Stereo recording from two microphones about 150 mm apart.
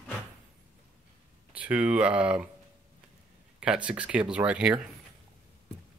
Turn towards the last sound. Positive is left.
turn(degrees=-5)  # may be behind; listen again after turning